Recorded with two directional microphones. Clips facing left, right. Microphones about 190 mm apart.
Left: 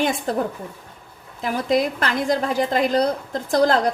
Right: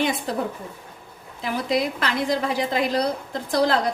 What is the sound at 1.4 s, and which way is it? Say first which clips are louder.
A woman's voice: left 3 dB; 50° left (ahead or behind).